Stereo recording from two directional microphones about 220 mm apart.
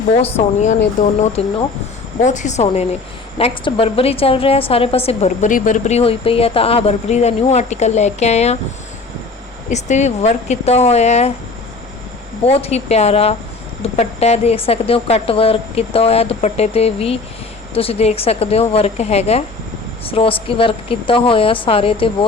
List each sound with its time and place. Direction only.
0.3 s a woman's voice: 30° left (ahead or behind)
9.6 s speech: 30° left (ahead or behind)
12.5 s a woman's voice: 30° left (ahead or behind)